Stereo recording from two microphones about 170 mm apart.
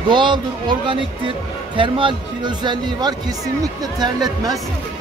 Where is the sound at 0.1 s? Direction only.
25° right (ahead or behind).